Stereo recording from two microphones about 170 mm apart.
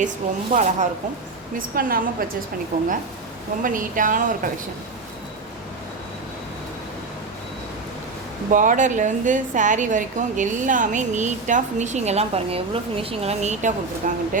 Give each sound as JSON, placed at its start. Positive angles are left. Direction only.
{"t": 0.5, "sound": "a woman's voice", "side_deg": -45}
{"t": 1.5, "sound": "a woman's voice", "side_deg": -55}
{"t": 8.4, "sound": "a woman's voice", "side_deg": -50}